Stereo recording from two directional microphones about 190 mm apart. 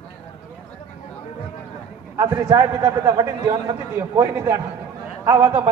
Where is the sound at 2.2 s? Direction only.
20° right (ahead or behind).